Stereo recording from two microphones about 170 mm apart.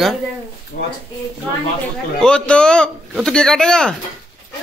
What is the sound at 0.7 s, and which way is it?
Speech, 65° left (ahead or behind).